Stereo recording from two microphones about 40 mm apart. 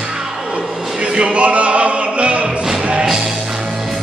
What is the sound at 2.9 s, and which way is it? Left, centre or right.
Music, centre.